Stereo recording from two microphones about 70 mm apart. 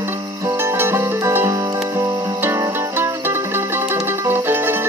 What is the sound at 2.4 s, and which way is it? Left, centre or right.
Zither, right.